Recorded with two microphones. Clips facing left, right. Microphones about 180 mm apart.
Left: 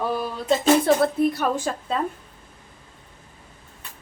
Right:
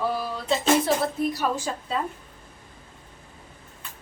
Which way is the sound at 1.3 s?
55° left (ahead or behind).